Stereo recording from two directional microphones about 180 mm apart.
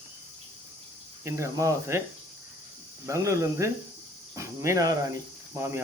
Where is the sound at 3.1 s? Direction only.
15° right (ahead or behind).